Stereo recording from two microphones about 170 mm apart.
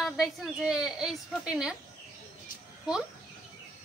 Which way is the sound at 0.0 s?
5° right (ahead or behind).